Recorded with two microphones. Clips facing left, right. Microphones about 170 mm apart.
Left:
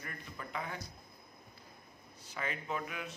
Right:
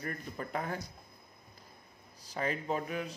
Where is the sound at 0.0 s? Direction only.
45° right (ahead or behind).